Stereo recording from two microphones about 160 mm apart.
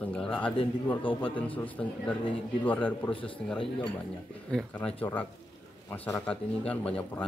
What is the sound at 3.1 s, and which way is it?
Speech, 35° left (ahead or behind).